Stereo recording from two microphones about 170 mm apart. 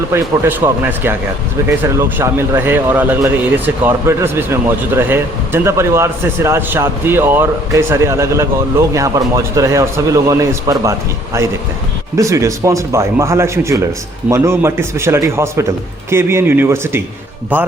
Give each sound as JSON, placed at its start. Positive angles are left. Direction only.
{"t": 0.1, "sound": "a man's voice", "side_deg": -15}
{"t": 12.1, "sound": "a man's voice", "side_deg": -20}